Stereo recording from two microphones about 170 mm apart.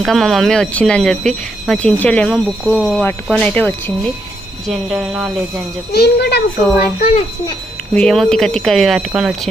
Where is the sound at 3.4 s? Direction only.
10° left (ahead or behind).